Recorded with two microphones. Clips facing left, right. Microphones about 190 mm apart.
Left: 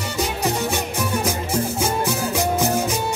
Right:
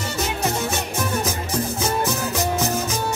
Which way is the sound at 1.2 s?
10° left (ahead or behind).